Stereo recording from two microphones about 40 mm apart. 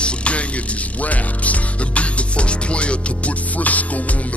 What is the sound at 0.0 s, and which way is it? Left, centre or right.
Music, left.